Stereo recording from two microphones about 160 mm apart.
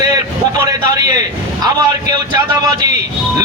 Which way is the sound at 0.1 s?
20° right (ahead or behind).